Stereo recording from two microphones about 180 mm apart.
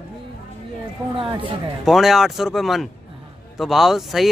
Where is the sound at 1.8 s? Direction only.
Centre (ahead or behind).